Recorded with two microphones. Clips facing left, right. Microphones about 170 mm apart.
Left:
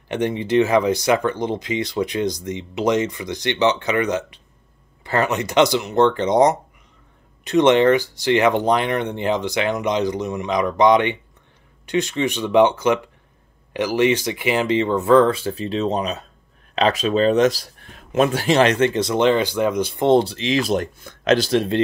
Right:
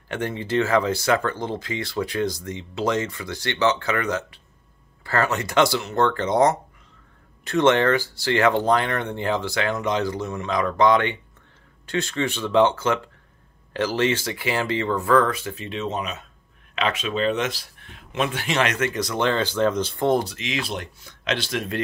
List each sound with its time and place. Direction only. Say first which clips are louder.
0.1 s speech: left 6 dB; 20° left (ahead or behind)
20.1 s speech: left 7 dB; 30° left (ahead or behind)